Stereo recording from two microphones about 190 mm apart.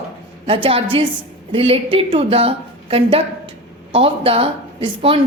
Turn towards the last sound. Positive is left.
turn(degrees=-30)  # may be behind; listen again after turning